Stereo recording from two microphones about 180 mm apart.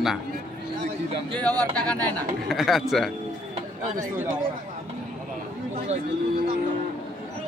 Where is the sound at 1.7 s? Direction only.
5° left (ahead or behind).